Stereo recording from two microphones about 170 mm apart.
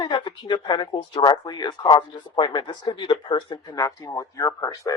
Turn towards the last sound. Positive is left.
turn(degrees=20)  # may be behind; listen again after turning